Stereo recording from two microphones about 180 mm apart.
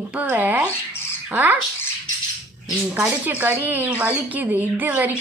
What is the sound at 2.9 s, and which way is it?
Speech, 10° right (ahead or behind).